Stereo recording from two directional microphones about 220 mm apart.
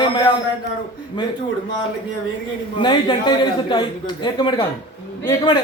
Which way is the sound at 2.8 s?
20° left (ahead or behind).